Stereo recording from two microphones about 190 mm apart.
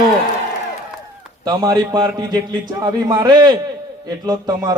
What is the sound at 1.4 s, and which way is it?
A man's voice, 20° right (ahead or behind).